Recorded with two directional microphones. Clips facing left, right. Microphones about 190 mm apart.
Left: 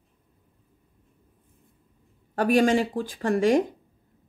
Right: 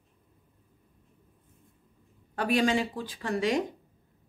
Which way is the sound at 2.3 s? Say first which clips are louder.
Left 5 dB; 45° left (ahead or behind).